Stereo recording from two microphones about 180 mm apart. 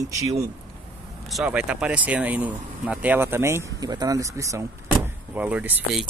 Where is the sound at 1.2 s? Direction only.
Centre (ahead or behind).